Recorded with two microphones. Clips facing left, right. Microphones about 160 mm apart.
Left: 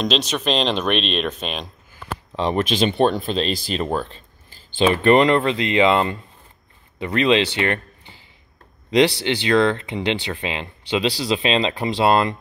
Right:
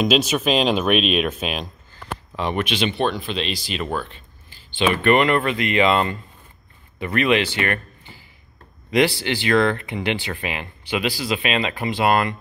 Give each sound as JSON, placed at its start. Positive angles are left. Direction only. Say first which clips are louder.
{"t": 0.0, "sound": "speech", "louder": "right 3 dB", "side_deg": -5}
{"t": 2.3, "sound": "speech", "louder": "left 3 dB", "side_deg": 30}
{"t": 9.2, "sound": "speech", "louder": "left 1 dB", "side_deg": 20}